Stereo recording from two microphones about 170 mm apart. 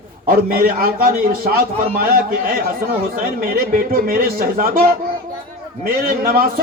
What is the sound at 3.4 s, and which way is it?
A man's voice, 60° right (ahead or behind).